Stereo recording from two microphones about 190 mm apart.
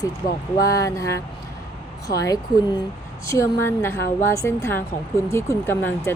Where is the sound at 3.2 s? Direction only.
15° left (ahead or behind).